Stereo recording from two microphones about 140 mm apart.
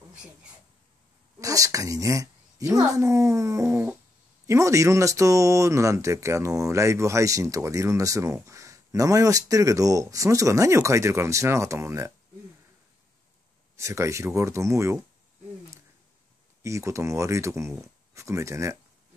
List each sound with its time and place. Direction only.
1.4 s speech: 25° right (ahead or behind)
13.7 s speech: 20° right (ahead or behind)
16.6 s speech: 20° right (ahead or behind)